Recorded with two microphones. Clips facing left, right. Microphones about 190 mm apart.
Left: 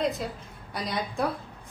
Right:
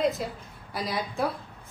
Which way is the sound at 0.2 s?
Centre (ahead or behind).